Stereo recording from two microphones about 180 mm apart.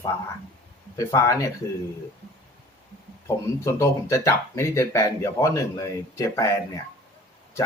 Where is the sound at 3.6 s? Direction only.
15° left (ahead or behind).